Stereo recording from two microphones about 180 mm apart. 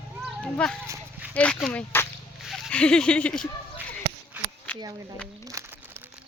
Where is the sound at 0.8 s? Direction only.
15° right (ahead or behind).